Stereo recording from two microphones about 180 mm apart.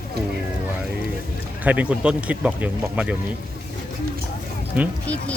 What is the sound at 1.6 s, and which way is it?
Speech, 10° right (ahead or behind).